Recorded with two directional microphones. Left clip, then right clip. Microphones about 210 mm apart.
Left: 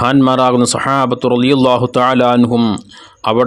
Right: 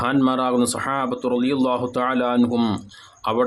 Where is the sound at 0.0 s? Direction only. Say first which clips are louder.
Left 9 dB; 40° left (ahead or behind).